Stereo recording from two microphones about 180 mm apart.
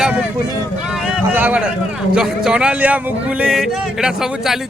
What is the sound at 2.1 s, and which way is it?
Speech, 5° right (ahead or behind).